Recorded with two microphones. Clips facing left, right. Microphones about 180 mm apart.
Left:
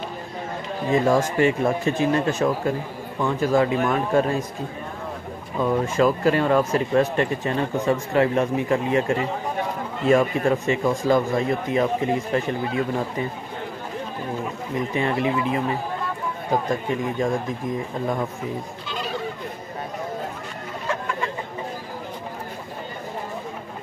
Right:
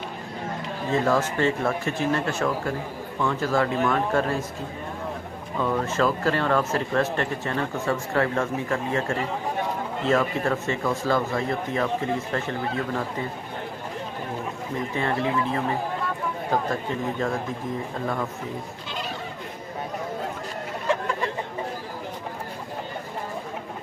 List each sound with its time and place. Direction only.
0.8 s speech: 15° left (ahead or behind)
5.6 s speech: 15° left (ahead or behind)
15.0 s speech: 15° left (ahead or behind)
16.6 s speech: 15° left (ahead or behind)